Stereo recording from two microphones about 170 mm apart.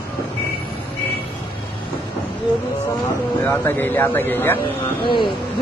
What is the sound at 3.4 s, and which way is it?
Speech, 15° left (ahead or behind).